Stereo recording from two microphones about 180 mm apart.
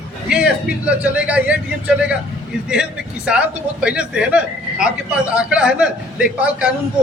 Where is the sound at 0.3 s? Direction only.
5° right (ahead or behind).